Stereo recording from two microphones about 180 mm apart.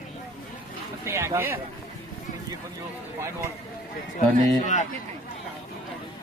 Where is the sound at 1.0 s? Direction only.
15° right (ahead or behind).